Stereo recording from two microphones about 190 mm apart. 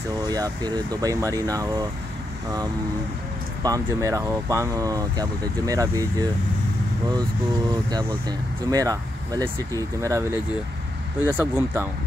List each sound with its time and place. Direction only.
0.3 s speech: 20° right (ahead or behind)
3.6 s speech: 15° right (ahead or behind)
8.3 s speech: 20° right (ahead or behind)